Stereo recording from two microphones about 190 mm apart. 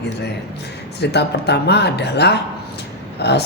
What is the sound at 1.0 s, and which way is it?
Speech, 60° left (ahead or behind).